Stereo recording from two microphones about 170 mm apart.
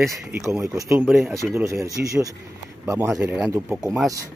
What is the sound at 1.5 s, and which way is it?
Speech, 15° right (ahead or behind).